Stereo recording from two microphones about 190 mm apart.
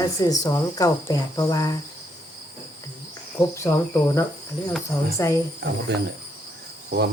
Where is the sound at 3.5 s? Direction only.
15° left (ahead or behind).